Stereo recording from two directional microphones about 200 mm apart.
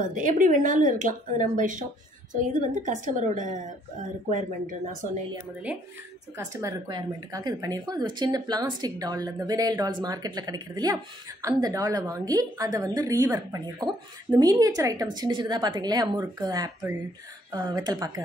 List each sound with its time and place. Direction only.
0.0 s speech: 40° right (ahead or behind)
6.3 s a woman's voice: 15° right (ahead or behind)